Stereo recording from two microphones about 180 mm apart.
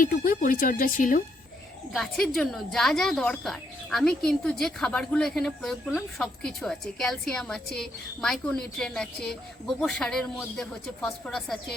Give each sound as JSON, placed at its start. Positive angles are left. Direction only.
{"t": 0.0, "sound": "speech", "side_deg": 55}
{"t": 1.9, "sound": "speech", "side_deg": 0}